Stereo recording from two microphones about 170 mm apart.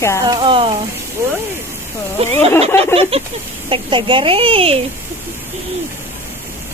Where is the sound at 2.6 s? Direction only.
35° right (ahead or behind).